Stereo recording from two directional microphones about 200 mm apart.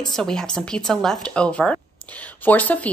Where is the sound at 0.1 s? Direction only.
5° left (ahead or behind).